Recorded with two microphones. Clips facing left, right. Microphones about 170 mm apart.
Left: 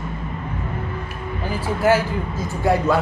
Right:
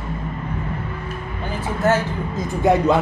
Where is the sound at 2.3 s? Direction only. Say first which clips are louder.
Right 3 dB; 20° right (ahead or behind).